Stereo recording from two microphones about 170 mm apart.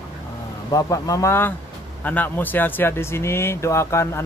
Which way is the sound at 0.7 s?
20° left (ahead or behind).